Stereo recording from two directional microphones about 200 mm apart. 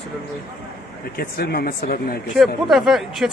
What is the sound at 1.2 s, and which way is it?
Speech, 50° left (ahead or behind).